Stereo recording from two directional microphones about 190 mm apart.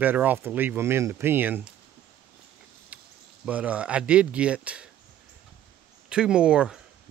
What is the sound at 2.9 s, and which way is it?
Cricket, 10° right (ahead or behind).